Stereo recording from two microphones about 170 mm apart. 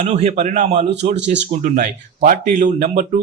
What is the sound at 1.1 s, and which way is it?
Speech, 90° right.